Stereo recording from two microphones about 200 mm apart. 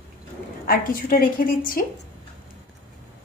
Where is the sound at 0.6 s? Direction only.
45° left (ahead or behind).